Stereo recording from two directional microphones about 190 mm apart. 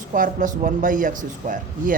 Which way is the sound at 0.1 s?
45° right (ahead or behind).